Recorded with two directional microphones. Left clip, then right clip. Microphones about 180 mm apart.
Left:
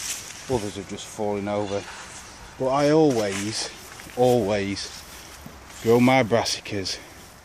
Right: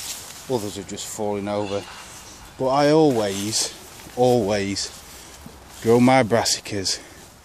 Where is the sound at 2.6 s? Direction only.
15° right (ahead or behind).